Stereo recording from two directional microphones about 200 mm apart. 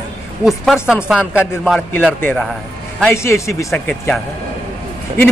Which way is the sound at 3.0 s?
10° left (ahead or behind).